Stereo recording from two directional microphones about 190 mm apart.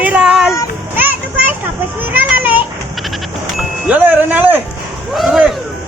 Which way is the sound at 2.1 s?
10° right (ahead or behind).